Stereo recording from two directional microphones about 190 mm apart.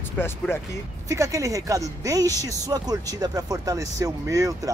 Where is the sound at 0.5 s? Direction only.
10° left (ahead or behind).